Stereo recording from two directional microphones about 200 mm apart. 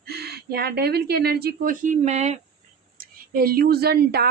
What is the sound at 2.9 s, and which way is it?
Speech, 50° right (ahead or behind).